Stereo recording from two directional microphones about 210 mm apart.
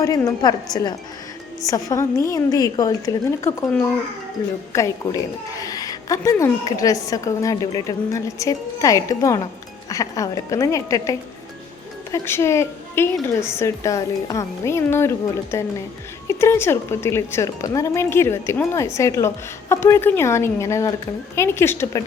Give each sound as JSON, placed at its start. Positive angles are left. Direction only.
{"t": 0.0, "sound": "a woman's voice", "side_deg": 15}